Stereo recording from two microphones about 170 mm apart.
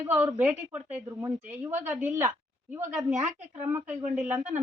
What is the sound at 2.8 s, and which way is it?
Speech, 45° right (ahead or behind).